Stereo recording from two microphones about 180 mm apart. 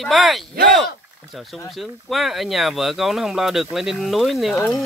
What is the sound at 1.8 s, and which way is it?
Speech, centre (ahead or behind).